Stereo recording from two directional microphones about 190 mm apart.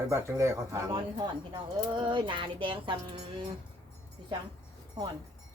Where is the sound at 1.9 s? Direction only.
25° right (ahead or behind).